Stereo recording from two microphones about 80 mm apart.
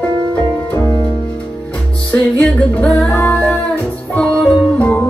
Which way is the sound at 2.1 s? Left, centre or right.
Centre.